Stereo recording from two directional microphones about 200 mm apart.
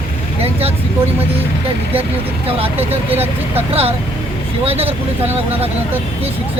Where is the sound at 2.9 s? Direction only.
30° right (ahead or behind).